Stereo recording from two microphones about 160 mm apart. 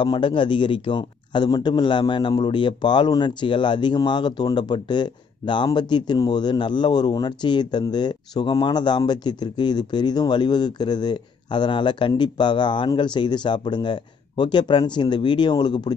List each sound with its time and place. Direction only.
0.0 s a man's voice: 30° left (ahead or behind)